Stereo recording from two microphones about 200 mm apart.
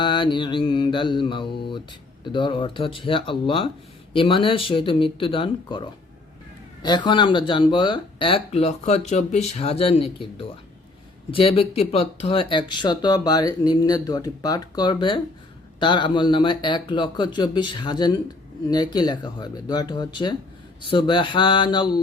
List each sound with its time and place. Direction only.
0.0 s speech: 25° left (ahead or behind)